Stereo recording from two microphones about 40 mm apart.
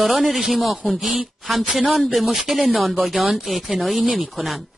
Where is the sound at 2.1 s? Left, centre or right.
Centre.